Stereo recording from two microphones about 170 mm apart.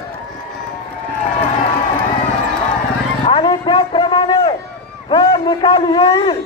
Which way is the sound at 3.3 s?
30° left (ahead or behind).